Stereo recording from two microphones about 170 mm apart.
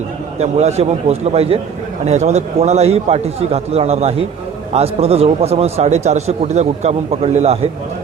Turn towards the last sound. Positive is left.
turn(degrees=-35)  # may be behind; listen again after turning